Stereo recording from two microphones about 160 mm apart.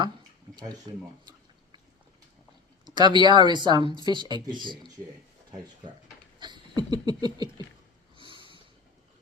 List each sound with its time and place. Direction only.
0.9 s speech: 30° right (ahead or behind)
2.8 s speech: 25° right (ahead or behind)
6.4 s a sound: 25° right (ahead or behind)
8.1 s snort: 30° right (ahead or behind)